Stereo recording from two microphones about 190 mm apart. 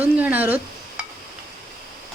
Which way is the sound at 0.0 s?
10° right (ahead or behind).